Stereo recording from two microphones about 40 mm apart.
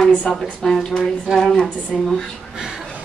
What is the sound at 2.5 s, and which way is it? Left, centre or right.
Chuckle, centre.